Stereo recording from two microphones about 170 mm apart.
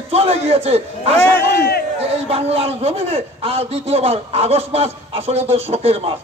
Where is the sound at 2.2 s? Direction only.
35° right (ahead or behind).